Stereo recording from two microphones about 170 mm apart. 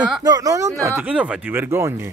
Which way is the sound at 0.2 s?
20° right (ahead or behind).